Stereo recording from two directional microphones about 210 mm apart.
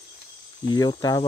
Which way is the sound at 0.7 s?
20° left (ahead or behind).